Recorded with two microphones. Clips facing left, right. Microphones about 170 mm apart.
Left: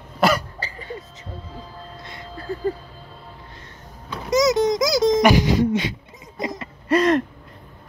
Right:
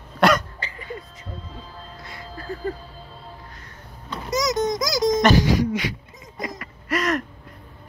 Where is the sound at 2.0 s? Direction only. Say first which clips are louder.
Right 1 dB; 25° left (ahead or behind).